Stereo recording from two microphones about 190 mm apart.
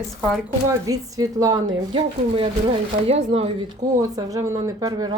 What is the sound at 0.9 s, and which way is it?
Speech, 20° right (ahead or behind).